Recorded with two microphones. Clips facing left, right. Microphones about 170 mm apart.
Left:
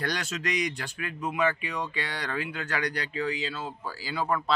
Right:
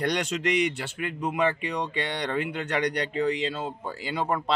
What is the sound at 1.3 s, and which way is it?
Speech, 30° right (ahead or behind).